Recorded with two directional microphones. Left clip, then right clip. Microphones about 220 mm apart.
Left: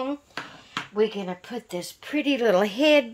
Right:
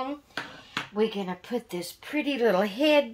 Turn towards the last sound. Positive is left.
turn(degrees=45)  # may be behind; listen again after turning